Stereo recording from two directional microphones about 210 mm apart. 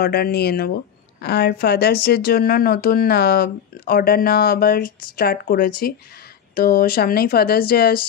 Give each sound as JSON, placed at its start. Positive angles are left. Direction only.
{"t": 0.0, "sound": "speech", "side_deg": 45}